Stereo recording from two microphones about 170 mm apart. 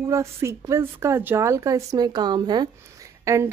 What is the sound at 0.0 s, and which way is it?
Speech, 15° right (ahead or behind).